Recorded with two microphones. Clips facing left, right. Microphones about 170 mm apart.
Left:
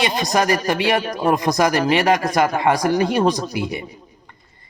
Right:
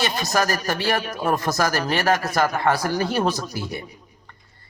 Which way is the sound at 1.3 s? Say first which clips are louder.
Left 5 dB; 15° left (ahead or behind).